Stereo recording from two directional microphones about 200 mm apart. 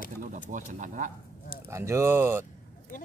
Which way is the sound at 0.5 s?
40° right (ahead or behind).